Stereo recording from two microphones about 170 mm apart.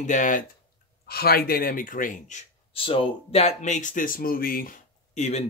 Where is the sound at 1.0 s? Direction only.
65° left (ahead or behind).